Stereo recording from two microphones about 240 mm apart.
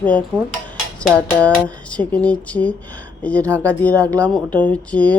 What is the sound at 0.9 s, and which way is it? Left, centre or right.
Speech, centre.